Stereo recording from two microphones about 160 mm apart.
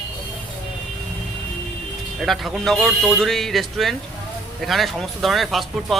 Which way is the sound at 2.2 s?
Centre (ahead or behind).